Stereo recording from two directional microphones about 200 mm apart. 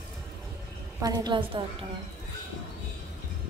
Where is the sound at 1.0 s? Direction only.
20° right (ahead or behind).